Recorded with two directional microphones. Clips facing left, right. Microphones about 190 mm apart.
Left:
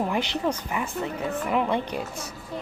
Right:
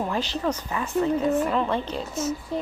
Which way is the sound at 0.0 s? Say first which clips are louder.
Left 1 dB; 15° left (ahead or behind).